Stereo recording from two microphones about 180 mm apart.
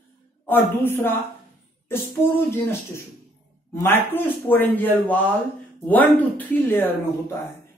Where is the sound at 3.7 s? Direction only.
15° left (ahead or behind).